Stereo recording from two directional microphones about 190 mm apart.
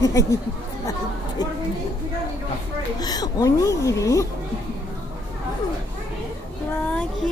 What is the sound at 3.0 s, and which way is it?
Speech, 20° left (ahead or behind).